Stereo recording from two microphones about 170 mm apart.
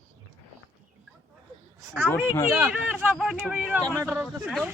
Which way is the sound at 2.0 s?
15° left (ahead or behind).